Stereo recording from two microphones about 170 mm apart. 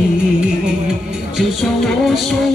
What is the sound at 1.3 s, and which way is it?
Music, centre (ahead or behind).